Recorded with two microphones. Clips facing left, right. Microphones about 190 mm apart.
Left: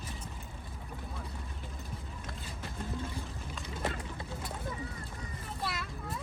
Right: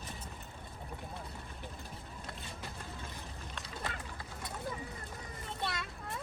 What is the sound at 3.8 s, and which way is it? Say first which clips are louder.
Clip-clop: left 7 dB; 25° left (ahead or behind).